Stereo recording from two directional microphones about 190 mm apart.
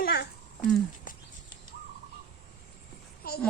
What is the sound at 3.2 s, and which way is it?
Speech, 50° left (ahead or behind).